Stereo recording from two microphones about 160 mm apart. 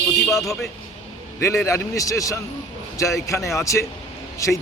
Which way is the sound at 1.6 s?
20° left (ahead or behind).